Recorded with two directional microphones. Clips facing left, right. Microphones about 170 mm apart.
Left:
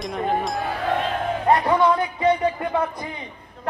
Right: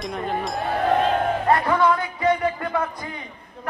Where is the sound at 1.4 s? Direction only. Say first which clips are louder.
Left 3 dB; 20° left (ahead or behind).